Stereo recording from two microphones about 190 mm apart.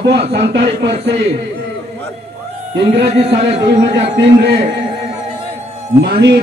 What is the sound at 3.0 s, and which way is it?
Speech, 30° right (ahead or behind).